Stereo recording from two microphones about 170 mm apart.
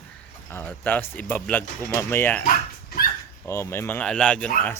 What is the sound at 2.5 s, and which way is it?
Dog, 55° left (ahead or behind).